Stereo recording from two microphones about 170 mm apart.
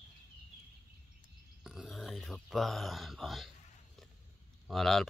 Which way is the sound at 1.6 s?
Centre (ahead or behind).